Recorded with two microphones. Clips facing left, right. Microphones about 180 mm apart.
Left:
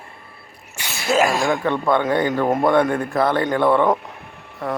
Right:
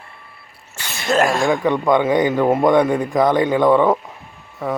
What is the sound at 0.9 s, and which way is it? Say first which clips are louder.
Speech: right 1 dB; 5° left (ahead or behind).